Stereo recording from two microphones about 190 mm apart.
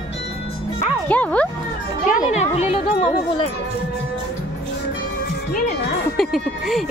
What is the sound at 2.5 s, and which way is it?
Speech, 30° left (ahead or behind).